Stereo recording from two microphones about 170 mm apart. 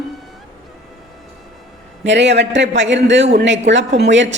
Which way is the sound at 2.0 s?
90° right.